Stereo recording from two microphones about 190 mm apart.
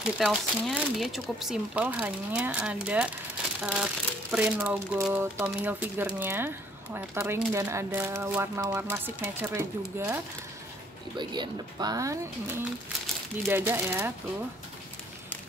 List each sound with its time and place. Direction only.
0.2 s speech: 5° right (ahead or behind)